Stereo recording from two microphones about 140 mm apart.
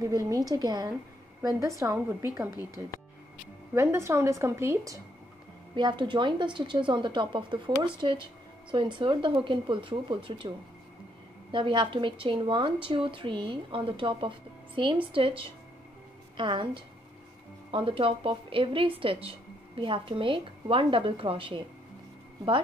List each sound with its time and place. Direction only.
0.0 s a woman's voice: 25° right (ahead or behind)
3.7 s a woman's voice: 15° right (ahead or behind)
5.8 s a woman's voice: 35° right (ahead or behind)
11.5 s a woman's voice: 35° right (ahead or behind)